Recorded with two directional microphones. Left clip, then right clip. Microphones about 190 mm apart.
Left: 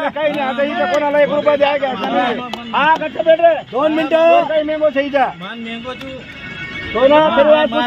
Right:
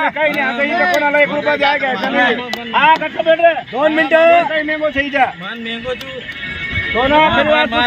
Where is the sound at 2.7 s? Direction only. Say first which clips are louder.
Right 2 dB; 35° left (ahead or behind).